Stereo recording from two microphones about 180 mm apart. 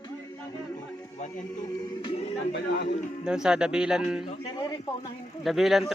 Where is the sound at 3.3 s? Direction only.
5° right (ahead or behind).